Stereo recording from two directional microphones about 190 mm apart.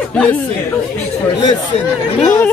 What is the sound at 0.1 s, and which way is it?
Speech, 5° left (ahead or behind).